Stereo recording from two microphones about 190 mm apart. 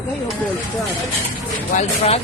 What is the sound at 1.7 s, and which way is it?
Speech, 30° left (ahead or behind).